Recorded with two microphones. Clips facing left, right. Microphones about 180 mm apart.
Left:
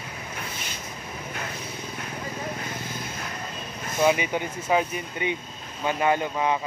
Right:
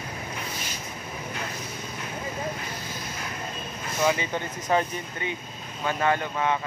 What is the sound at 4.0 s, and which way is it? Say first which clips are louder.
Speech: left 3 dB; 15° left (ahead or behind).